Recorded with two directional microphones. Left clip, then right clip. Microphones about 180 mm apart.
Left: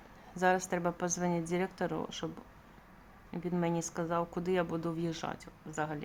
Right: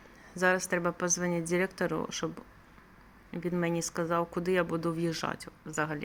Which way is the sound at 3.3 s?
5° right (ahead or behind).